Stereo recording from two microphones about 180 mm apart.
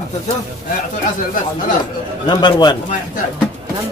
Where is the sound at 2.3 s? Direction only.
25° left (ahead or behind).